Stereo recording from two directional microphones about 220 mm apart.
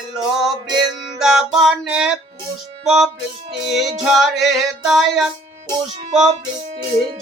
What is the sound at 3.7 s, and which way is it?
Singing, centre (ahead or behind).